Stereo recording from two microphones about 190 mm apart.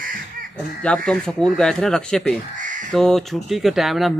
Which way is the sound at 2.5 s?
45° right (ahead or behind).